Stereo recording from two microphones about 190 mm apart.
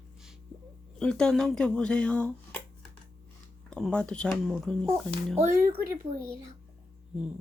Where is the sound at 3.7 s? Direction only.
5° left (ahead or behind).